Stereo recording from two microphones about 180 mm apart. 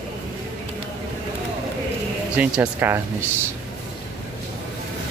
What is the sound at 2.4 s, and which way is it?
Speech, 10° right (ahead or behind).